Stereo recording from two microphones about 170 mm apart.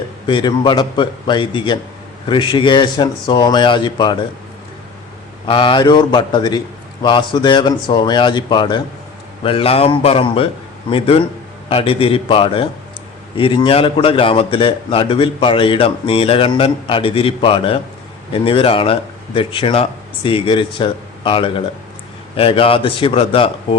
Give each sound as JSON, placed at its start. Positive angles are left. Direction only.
{"t": 0.3, "sound": "speech", "side_deg": 30}
{"t": 5.5, "sound": "a man's voice", "side_deg": 30}